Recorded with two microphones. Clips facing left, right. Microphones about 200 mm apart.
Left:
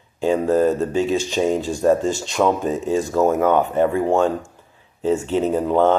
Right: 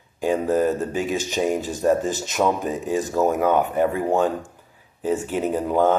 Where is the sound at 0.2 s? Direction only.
15° right (ahead or behind).